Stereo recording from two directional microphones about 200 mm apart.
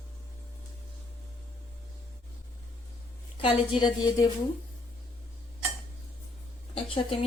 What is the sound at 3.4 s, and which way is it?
Speech, 25° left (ahead or behind).